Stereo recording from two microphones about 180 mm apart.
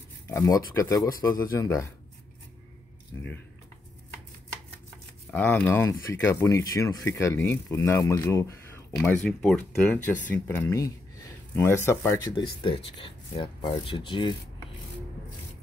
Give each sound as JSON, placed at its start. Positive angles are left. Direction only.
{"t": 0.3, "sound": "speech", "side_deg": 15}
{"t": 5.3, "sound": "speech", "side_deg": 10}
{"t": 12.4, "sound": "speech", "side_deg": 30}